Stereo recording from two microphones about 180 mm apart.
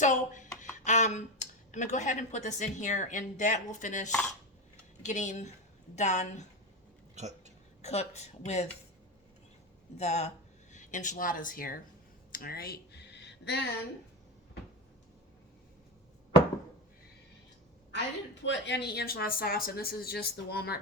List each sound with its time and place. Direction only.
0.0 s speech: 45° left (ahead or behind)
7.2 s speech: 40° right (ahead or behind)
7.8 s speech: 35° left (ahead or behind)
10.0 s speech: 40° left (ahead or behind)
12.3 s a sound: 55° left (ahead or behind)
18.4 s speech: 75° left (ahead or behind)